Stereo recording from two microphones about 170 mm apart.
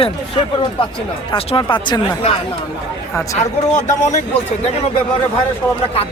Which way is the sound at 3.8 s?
45° left (ahead or behind).